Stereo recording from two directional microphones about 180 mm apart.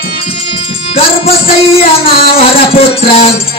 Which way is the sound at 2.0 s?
30° left (ahead or behind).